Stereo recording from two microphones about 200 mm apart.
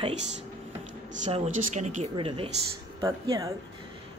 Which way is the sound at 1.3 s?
30° right (ahead or behind).